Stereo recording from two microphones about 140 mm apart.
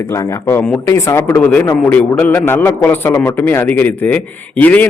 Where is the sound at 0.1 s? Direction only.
20° left (ahead or behind).